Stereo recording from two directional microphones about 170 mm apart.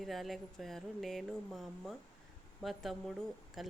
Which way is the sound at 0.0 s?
Centre (ahead or behind).